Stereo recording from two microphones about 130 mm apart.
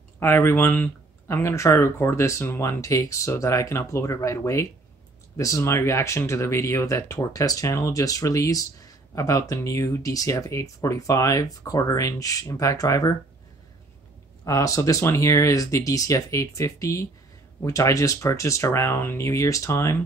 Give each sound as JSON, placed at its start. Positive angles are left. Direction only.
{"t": 0.2, "sound": "speech", "side_deg": 20}
{"t": 14.4, "sound": "speech", "side_deg": 25}